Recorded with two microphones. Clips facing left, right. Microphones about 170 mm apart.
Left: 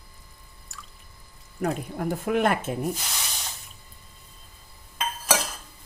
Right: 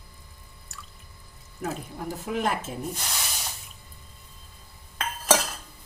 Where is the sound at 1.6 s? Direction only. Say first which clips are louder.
Left 5 dB; 65° left (ahead or behind).